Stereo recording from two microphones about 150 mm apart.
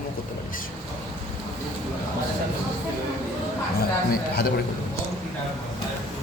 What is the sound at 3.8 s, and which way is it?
Speech, 80° left.